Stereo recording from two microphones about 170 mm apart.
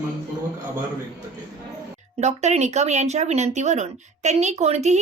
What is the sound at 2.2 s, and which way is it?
Speech, 40° right (ahead or behind).